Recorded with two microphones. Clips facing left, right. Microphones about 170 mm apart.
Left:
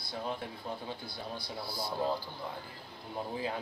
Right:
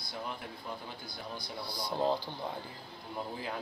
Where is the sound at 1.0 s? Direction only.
30° left (ahead or behind).